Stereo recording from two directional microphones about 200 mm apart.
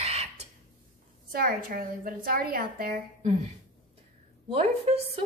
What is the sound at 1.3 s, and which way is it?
A woman's voice, 50° right (ahead or behind).